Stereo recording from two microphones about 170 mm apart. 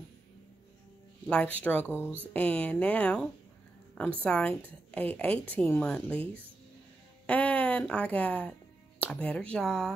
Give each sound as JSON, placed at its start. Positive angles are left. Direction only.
{"t": 1.2, "sound": "a woman's voice", "side_deg": 5}
{"t": 7.2, "sound": "speech", "side_deg": 10}